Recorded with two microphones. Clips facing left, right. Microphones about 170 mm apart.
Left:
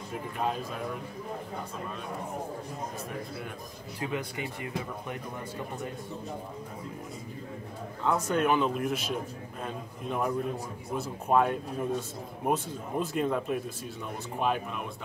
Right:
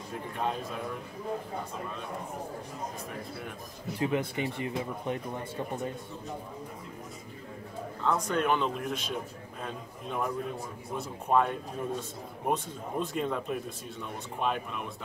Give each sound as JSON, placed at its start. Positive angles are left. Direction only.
{"t": 0.1, "sound": "speech", "side_deg": 0}
{"t": 4.0, "sound": "speech", "side_deg": -25}
{"t": 8.0, "sound": "speech", "side_deg": 5}